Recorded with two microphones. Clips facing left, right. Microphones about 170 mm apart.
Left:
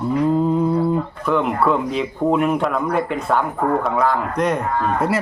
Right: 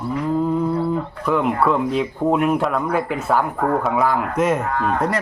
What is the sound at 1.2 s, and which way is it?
Speech, centre (ahead or behind).